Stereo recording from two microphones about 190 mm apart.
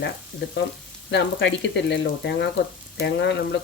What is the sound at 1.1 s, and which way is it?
Speech, 65° left (ahead or behind).